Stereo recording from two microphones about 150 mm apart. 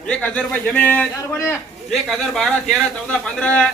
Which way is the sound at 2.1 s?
Centre (ahead or behind).